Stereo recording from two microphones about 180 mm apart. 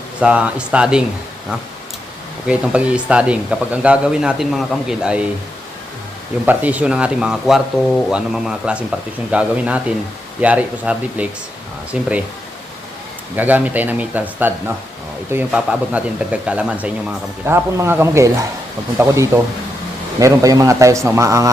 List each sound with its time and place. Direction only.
0.2 s speech: 5° right (ahead or behind)
2.5 s speech: 5° right (ahead or behind)
6.4 s speech: 10° right (ahead or behind)
13.3 s speech: 10° right (ahead or behind)